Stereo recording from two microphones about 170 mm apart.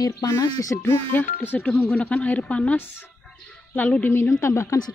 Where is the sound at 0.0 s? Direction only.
20° left (ahead or behind).